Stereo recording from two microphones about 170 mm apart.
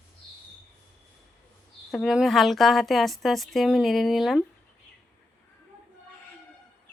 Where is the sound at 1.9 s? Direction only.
Centre (ahead or behind).